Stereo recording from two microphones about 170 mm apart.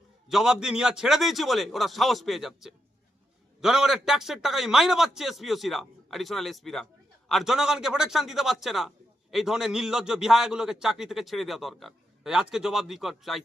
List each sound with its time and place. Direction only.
0.3 s a man's voice: 5° right (ahead or behind)